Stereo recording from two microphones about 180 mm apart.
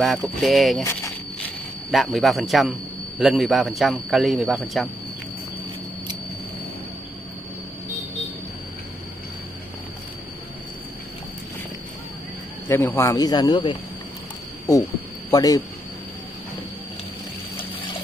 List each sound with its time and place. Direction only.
0.0 s a man's voice: centre (ahead or behind)
1.9 s a man's voice: centre (ahead or behind)
12.6 s speech: 15° left (ahead or behind)
15.3 s speech: 20° left (ahead or behind)